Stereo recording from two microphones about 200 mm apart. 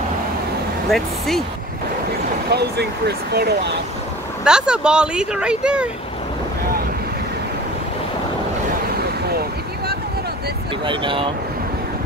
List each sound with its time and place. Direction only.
0.8 s speech: centre (ahead or behind)
2.5 s speech: 55° right (ahead or behind)
4.5 s speech: 5° right (ahead or behind)
10.9 s speech: 25° right (ahead or behind)